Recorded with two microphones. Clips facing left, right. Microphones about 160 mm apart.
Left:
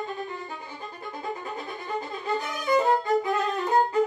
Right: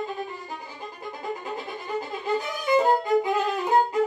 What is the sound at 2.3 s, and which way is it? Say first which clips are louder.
Violin: right 2 dB; centre (ahead or behind).